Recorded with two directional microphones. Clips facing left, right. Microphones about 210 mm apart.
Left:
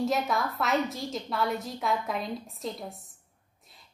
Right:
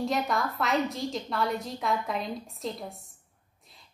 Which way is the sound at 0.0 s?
Centre (ahead or behind).